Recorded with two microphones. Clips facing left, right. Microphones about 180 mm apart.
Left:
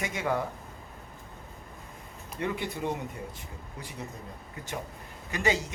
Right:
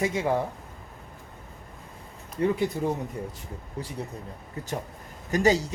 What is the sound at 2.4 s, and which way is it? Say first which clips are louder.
Speech: right 7 dB; 35° right (ahead or behind).